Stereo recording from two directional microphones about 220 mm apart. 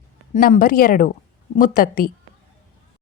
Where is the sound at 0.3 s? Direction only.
40° left (ahead or behind).